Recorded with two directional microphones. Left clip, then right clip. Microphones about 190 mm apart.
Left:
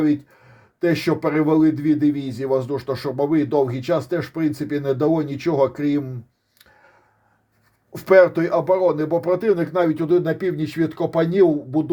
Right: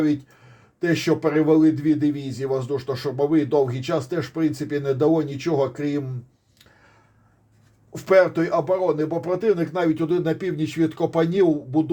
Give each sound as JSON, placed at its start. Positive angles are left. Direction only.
{"t": 0.8, "sound": "a man's voice", "side_deg": 35}
{"t": 7.9, "sound": "a man's voice", "side_deg": 35}